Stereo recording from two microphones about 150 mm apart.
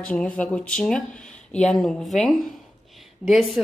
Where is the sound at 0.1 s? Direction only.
10° left (ahead or behind).